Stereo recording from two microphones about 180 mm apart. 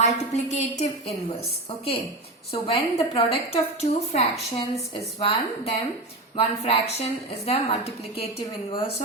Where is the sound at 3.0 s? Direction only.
30° left (ahead or behind).